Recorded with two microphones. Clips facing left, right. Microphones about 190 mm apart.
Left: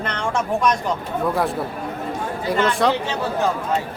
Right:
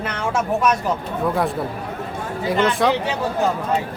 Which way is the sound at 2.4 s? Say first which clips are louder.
Right 1 dB; centre (ahead or behind).